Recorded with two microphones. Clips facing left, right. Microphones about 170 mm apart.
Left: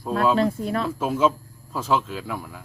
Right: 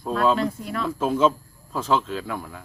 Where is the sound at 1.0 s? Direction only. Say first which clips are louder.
Right 3 dB; 10° left (ahead or behind).